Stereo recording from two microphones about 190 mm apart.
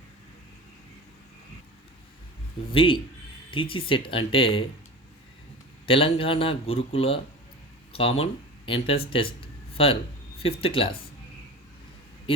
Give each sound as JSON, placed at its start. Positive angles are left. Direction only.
{"t": 2.7, "sound": "speech", "side_deg": 25}
{"t": 5.8, "sound": "speech", "side_deg": 30}
{"t": 9.4, "sound": "a sound", "side_deg": 30}
{"t": 10.4, "sound": "speech", "side_deg": 30}